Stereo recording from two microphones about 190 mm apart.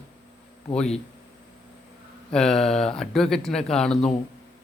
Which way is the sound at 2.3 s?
5° left (ahead or behind).